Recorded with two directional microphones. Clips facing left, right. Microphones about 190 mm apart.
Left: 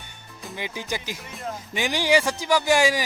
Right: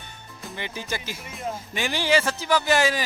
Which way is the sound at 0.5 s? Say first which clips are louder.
Left 1 dB; 15° left (ahead or behind).